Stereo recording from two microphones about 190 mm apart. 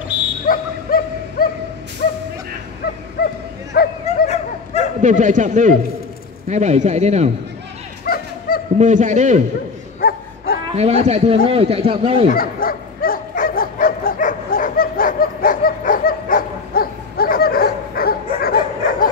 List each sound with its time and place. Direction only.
0.1 s dog: 5° right (ahead or behind)
0.5 s dog: 50° left (ahead or behind)
3.7 s bow-wow: 55° left (ahead or behind)
5.0 s a man's voice: 40° right (ahead or behind)
8.0 s dog: 50° left (ahead or behind)
8.7 s a man's voice: 40° right (ahead or behind)
9.9 s dog: 50° left (ahead or behind)
10.7 s a man's voice: 35° right (ahead or behind)
12.3 s bow-wow: 50° left (ahead or behind)